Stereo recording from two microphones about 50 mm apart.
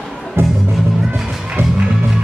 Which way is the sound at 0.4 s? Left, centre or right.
Right.